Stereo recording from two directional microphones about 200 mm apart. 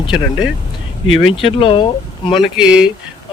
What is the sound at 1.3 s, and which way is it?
Speech, 25° left (ahead or behind).